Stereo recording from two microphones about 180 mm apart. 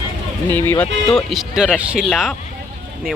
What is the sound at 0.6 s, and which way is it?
Speech, 10° left (ahead or behind).